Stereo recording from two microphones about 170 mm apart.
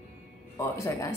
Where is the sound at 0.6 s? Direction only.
15° left (ahead or behind).